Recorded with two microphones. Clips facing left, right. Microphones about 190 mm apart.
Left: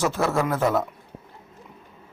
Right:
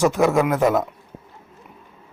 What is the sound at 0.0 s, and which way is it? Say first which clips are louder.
Speech: right 6 dB; 15° right (ahead or behind).